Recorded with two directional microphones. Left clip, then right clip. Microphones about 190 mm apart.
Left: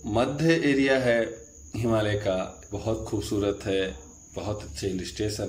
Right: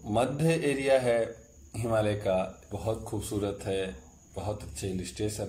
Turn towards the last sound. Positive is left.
turn(degrees=-10)  # may be behind; listen again after turning